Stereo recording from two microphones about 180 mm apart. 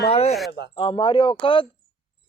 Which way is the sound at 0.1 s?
35° left (ahead or behind).